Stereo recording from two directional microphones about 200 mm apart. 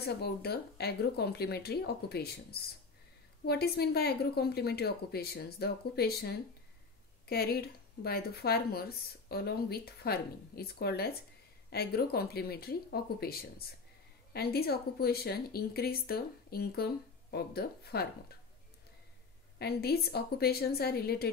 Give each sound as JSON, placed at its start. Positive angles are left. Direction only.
{"t": 0.0, "sound": "speech", "side_deg": 55}
{"t": 19.6, "sound": "speech", "side_deg": 50}